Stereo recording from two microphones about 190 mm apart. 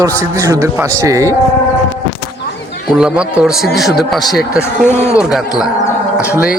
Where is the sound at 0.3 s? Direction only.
15° right (ahead or behind).